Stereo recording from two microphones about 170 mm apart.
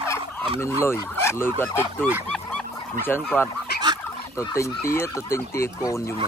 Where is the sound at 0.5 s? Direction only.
15° left (ahead or behind).